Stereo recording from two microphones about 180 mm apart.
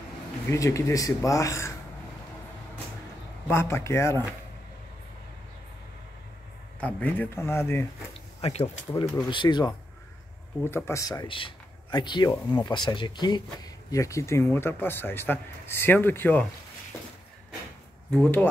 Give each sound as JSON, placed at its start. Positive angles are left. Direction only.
{"t": 0.5, "sound": "speech", "side_deg": 15}
{"t": 3.4, "sound": "speech", "side_deg": 15}
{"t": 6.8, "sound": "speech", "side_deg": 10}
{"t": 8.4, "sound": "speech", "side_deg": 35}
{"t": 10.6, "sound": "speech", "side_deg": 15}
{"t": 18.1, "sound": "speech", "side_deg": 10}